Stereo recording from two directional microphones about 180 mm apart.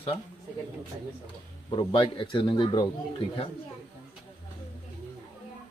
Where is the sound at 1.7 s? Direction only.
25° left (ahead or behind).